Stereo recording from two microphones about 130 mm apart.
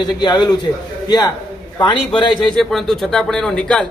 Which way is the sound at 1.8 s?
40° left (ahead or behind).